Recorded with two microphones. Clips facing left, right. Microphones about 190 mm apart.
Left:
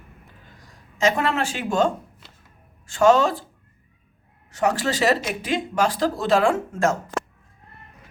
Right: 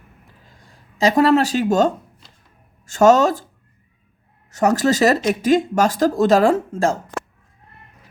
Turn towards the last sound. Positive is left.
turn(degrees=-30)  # may be behind; listen again after turning